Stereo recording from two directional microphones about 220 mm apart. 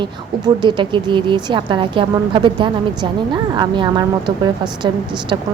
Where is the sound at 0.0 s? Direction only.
20° right (ahead or behind).